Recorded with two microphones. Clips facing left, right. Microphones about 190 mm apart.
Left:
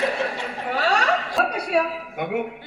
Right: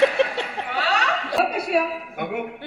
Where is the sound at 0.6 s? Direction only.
45° left (ahead or behind).